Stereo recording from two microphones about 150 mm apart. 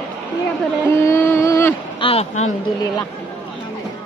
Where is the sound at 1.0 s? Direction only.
15° left (ahead or behind).